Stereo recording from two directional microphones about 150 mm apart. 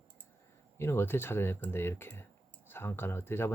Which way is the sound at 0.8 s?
15° left (ahead or behind).